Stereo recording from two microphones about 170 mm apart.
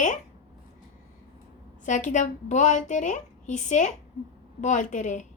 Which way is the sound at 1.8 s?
45° left (ahead or behind).